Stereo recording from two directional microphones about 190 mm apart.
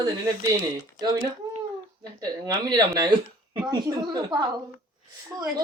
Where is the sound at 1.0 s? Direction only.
20° right (ahead or behind).